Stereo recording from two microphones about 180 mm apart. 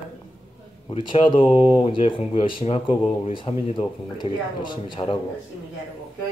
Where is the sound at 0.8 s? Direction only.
30° left (ahead or behind).